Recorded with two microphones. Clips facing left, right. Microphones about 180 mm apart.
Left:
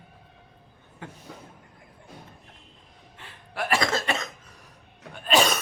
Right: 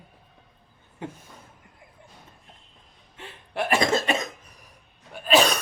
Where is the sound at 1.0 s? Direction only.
20° right (ahead or behind).